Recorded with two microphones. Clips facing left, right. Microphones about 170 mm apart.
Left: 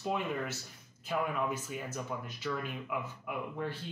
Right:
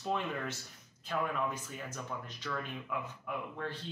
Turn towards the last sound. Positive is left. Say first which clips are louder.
# left 2 dB
turn(degrees=10)  # may be behind; listen again after turning